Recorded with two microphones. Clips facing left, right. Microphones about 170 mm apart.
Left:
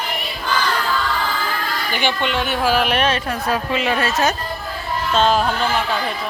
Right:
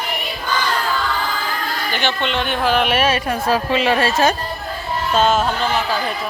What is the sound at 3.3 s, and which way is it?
A woman's voice, 30° right (ahead or behind).